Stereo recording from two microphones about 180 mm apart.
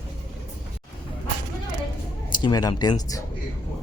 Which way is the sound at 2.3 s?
20° left (ahead or behind).